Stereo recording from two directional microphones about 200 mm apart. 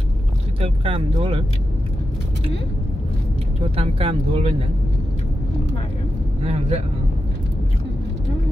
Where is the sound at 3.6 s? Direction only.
30° right (ahead or behind).